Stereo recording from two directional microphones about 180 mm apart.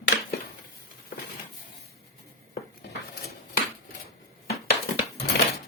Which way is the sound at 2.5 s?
60° left (ahead or behind).